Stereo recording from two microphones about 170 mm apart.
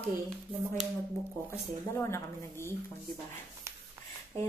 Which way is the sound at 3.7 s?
15° right (ahead or behind).